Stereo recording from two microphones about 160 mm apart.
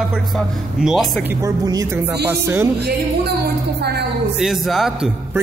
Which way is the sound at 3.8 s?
90° right.